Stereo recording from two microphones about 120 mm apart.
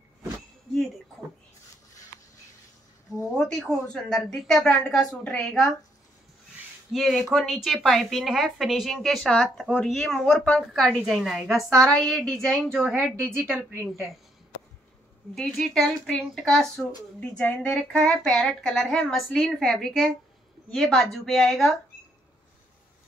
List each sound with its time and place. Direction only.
3.3 s a woman's voice: 5° left (ahead or behind)
6.9 s a woman's voice: centre (ahead or behind)
10.2 s a woman's voice: 15° left (ahead or behind)
10.5 s a woman's voice: centre (ahead or behind)
15.3 s a woman's voice: 5° left (ahead or behind)